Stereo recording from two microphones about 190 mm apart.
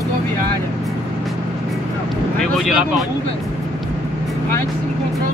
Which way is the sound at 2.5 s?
Centre (ahead or behind).